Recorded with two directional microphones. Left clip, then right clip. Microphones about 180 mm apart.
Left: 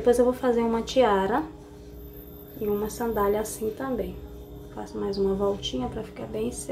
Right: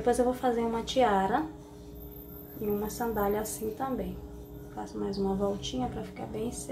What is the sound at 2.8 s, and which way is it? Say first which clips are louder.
A woman's voice: left 5 dB; 15° left (ahead or behind).